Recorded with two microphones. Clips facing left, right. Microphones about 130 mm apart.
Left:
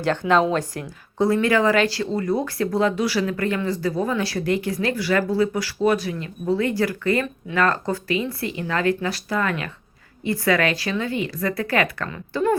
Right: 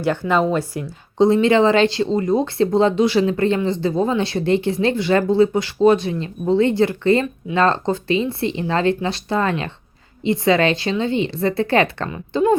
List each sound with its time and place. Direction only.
0.0 s speech: 10° right (ahead or behind)
1.2 s speech: 25° right (ahead or behind)